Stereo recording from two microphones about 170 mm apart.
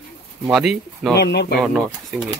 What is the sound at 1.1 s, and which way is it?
Speech, 75° left (ahead or behind).